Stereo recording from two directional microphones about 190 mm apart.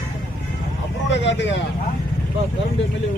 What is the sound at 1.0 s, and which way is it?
Speech, 70° left (ahead or behind).